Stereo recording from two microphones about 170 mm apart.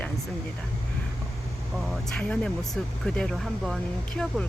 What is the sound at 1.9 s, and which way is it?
Speech, 5° left (ahead or behind).